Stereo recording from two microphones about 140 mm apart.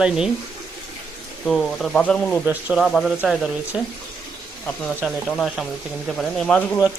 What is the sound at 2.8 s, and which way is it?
Speech, centre (ahead or behind).